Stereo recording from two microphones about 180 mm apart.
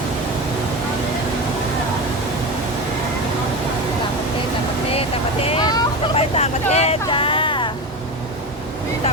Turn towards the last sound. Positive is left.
turn(degrees=25)  # may be behind; listen again after turning